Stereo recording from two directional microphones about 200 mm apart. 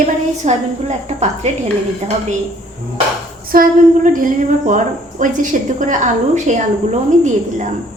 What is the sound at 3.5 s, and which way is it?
Speech, 45° right (ahead or behind).